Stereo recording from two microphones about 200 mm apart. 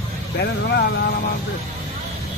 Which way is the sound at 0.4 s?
55° left (ahead or behind).